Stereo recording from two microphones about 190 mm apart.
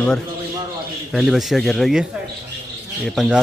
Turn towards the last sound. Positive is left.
turn(degrees=0)  # may be behind; listen again after turning